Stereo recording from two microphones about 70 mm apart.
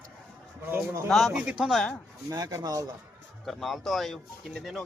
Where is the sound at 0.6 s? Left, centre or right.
Right.